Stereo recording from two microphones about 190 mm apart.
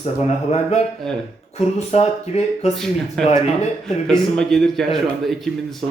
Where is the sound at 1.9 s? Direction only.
35° left (ahead or behind).